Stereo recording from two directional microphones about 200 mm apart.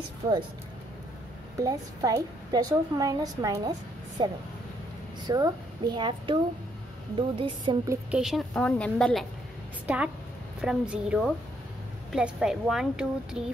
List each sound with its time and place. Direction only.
0.2 s a woman's voice: 15° right (ahead or behind)
1.6 s a woman's voice: 15° right (ahead or behind)
8.2 s a woman's voice: centre (ahead or behind)